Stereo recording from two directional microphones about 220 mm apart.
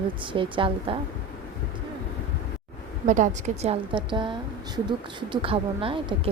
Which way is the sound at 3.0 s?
35° right (ahead or behind).